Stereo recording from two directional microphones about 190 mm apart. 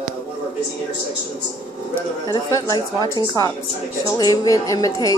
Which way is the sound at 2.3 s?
20° left (ahead or behind).